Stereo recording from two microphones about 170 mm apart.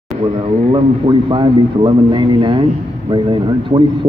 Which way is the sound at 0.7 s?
30° right (ahead or behind).